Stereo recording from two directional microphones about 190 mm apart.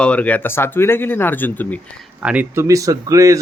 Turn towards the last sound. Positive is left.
turn(degrees=-15)  # may be behind; listen again after turning